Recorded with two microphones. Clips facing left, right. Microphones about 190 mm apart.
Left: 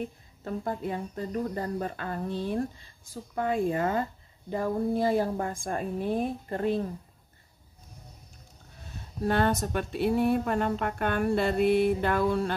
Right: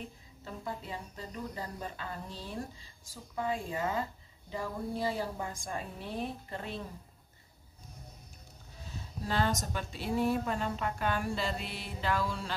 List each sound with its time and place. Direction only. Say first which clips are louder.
0.4 s a woman's voice: left 9 dB; 55° left (ahead or behind)
8.9 s speech: left 7 dB; 60° left (ahead or behind)